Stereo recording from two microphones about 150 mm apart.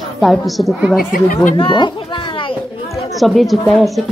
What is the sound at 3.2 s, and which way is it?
Speech, centre (ahead or behind).